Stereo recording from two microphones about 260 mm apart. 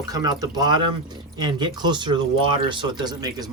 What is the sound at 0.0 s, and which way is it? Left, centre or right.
Speech, centre.